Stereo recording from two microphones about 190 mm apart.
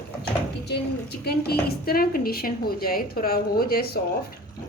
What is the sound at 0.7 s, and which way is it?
A woman's voice, 60° left (ahead or behind).